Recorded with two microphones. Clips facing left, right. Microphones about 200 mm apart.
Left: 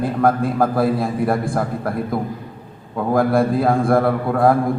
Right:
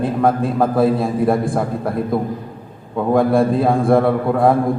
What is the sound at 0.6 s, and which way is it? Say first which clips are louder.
Speech: right 3 dB; centre (ahead or behind).